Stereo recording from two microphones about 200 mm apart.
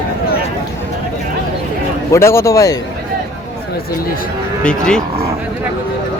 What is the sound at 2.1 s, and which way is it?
Speech, 15° left (ahead or behind).